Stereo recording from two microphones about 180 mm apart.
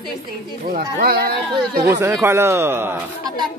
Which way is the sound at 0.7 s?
55° right (ahead or behind).